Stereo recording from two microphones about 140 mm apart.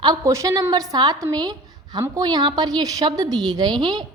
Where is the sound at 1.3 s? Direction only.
30° right (ahead or behind).